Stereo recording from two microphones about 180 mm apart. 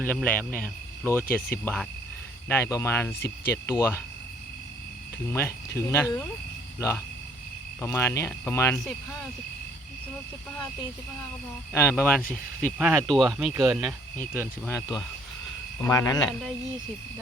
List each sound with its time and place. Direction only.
0.0 s speech: 10° left (ahead or behind)
5.3 s speech: 15° left (ahead or behind)
11.7 s speech: 15° left (ahead or behind); by 13.9 s centre (ahead or behind)
14.7 s speech: 20° left (ahead or behind)